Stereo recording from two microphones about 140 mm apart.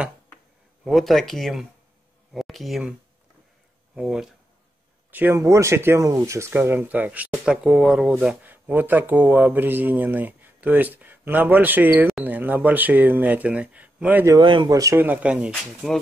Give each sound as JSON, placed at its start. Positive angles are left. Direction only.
{"t": 0.8, "sound": "speech", "side_deg": 0}
{"t": 3.9, "sound": "speech", "side_deg": -5}
{"t": 14.3, "sound": "speech", "side_deg": -35}